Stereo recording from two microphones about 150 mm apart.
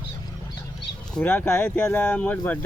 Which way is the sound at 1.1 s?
10° left (ahead or behind).